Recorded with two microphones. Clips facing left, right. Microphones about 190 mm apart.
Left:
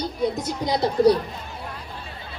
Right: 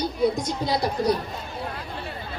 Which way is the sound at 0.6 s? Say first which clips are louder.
Left 2 dB; 20° left (ahead or behind).